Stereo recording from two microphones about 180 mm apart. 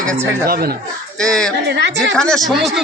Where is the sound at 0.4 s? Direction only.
55° right (ahead or behind).